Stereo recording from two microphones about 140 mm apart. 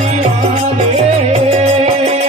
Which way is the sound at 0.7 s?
50° right (ahead or behind).